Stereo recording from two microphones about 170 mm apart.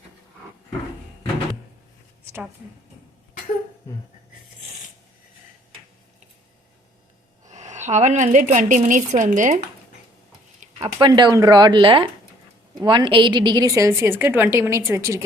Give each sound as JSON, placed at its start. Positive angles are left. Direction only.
{"t": 7.4, "sound": "a woman's voice", "side_deg": -45}
{"t": 10.8, "sound": "a woman's voice", "side_deg": -20}